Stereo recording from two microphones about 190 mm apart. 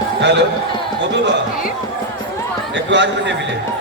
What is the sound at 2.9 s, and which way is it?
Speech, 65° right (ahead or behind).